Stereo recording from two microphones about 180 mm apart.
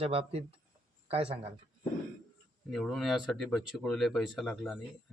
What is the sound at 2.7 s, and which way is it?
Speech, centre (ahead or behind).